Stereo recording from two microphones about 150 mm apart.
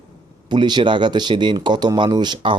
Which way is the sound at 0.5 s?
30° right (ahead or behind).